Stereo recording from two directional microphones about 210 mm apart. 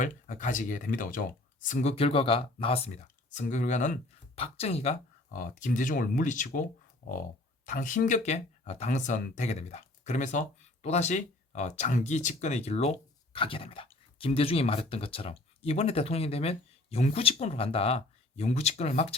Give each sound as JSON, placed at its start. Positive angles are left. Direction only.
{"t": 0.0, "sound": "speech", "side_deg": 35}